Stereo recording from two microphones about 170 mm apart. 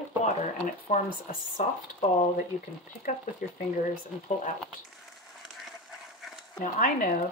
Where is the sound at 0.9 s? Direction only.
50° left (ahead or behind).